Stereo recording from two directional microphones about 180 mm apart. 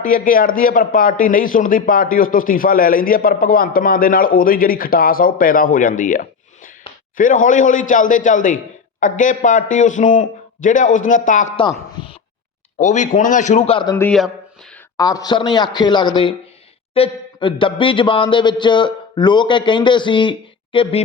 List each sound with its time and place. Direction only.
0.0 s a man's voice: 50° left (ahead or behind)
12.8 s a man's voice: 45° left (ahead or behind)
13.9 s a man's voice: 10° left (ahead or behind); by 20.9 s 30° left (ahead or behind)